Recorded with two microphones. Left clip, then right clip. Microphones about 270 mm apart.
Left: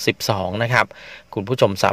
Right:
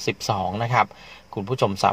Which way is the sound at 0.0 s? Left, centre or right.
Left.